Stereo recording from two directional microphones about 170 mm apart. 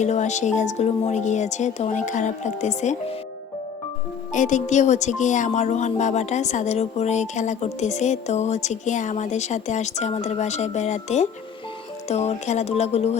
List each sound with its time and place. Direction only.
0.0 s speech: 45° left (ahead or behind)
4.3 s speech: 45° left (ahead or behind)